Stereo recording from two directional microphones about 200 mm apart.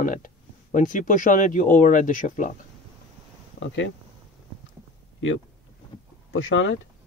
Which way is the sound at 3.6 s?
70° left (ahead or behind).